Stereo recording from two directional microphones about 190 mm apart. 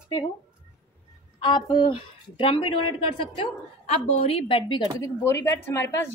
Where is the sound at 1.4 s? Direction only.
25° left (ahead or behind).